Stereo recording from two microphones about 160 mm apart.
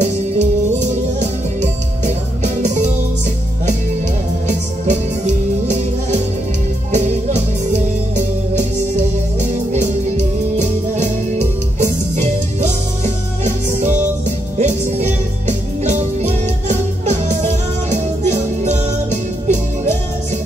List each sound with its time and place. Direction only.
0.0 s music: 45° right (ahead or behind)
4.5 s music: 45° right (ahead or behind)